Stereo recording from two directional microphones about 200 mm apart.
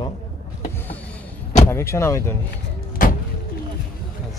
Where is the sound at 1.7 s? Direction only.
15° left (ahead or behind).